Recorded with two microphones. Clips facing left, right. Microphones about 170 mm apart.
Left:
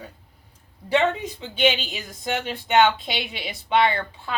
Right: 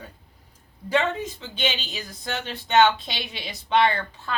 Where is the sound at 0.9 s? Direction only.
15° left (ahead or behind).